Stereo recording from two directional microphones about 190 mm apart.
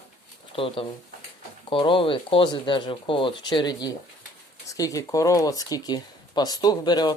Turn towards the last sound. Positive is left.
turn(degrees=20)  # may be behind; listen again after turning